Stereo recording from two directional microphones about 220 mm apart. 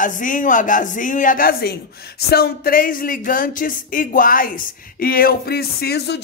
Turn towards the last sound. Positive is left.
turn(degrees=50)  # may be behind; listen again after turning